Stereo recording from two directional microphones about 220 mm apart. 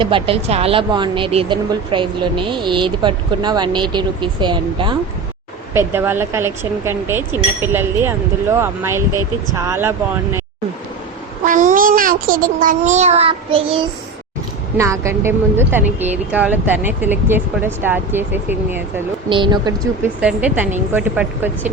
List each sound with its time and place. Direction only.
0.0 s speech: 25° right (ahead or behind)
5.7 s a woman's voice: 10° right (ahead or behind)
11.4 s a child's voice: 35° right (ahead or behind)
14.8 s a woman's voice: 15° right (ahead or behind)
19.3 s speech: 20° right (ahead or behind)
20.2 s a woman's voice: 5° right (ahead or behind)